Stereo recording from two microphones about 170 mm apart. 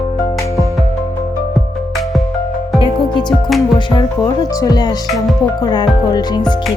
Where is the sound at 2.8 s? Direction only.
25° left (ahead or behind).